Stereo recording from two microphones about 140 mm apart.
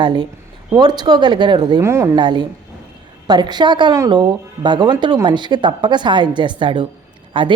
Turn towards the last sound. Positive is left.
turn(degrees=-35)  # may be behind; listen again after turning